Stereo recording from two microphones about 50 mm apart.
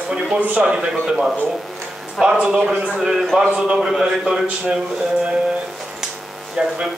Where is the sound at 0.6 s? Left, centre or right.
Centre.